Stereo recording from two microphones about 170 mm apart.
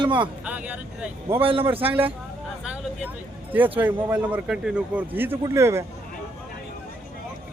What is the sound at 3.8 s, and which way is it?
A man's voice, 10° right (ahead or behind).